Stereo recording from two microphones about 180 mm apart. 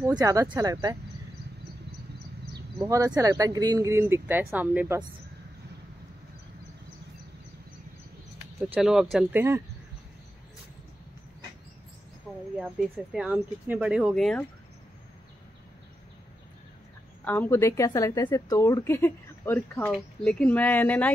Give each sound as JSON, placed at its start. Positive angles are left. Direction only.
{"t": 0.0, "sound": "speech", "side_deg": -20}
{"t": 2.8, "sound": "speech", "side_deg": -20}
{"t": 8.7, "sound": "speech", "side_deg": -5}
{"t": 9.3, "sound": "speech", "side_deg": -15}
{"t": 12.5, "sound": "speech", "side_deg": 0}
{"t": 17.2, "sound": "a woman's voice", "side_deg": 10}